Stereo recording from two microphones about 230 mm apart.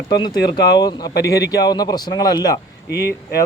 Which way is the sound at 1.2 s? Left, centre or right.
Left.